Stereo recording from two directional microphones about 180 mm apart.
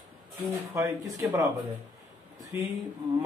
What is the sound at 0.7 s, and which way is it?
Speech, 20° right (ahead or behind).